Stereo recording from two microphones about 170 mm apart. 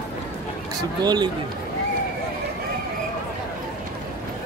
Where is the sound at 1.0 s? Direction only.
25° right (ahead or behind).